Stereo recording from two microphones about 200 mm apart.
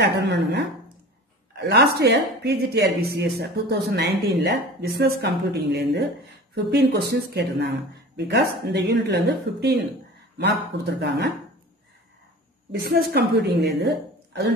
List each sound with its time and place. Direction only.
0.0 s speech: 60° right (ahead or behind)
1.6 s speech: 55° right (ahead or behind)
12.8 s speech: 50° right (ahead or behind)